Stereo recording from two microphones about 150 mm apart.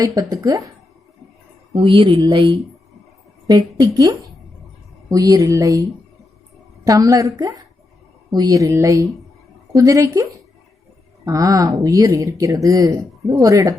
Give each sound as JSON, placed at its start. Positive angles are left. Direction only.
{"t": 0.0, "sound": "speech", "side_deg": -25}
{"t": 1.7, "sound": "speech", "side_deg": -35}
{"t": 6.8, "sound": "speech", "side_deg": -25}
{"t": 11.3, "sound": "speech", "side_deg": -20}